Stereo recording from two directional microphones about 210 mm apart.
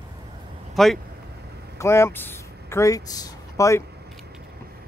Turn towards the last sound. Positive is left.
turn(degrees=15)  # may be behind; listen again after turning